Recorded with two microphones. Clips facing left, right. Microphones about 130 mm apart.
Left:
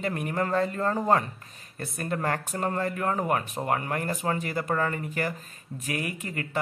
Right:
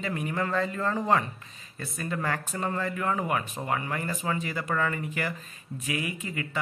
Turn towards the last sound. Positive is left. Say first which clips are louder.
# left 1 dB
turn(degrees=50)  # may be behind; listen again after turning